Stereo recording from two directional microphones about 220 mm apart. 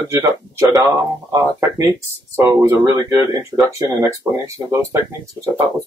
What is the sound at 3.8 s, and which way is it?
Speech, 15° right (ahead or behind).